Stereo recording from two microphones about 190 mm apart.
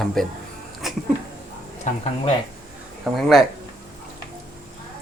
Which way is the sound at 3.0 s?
Centre (ahead or behind).